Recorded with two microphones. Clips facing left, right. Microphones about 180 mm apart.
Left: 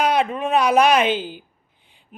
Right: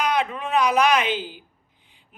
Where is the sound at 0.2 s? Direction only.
50° left (ahead or behind).